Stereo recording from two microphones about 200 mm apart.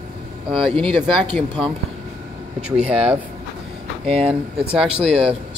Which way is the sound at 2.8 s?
30° right (ahead or behind).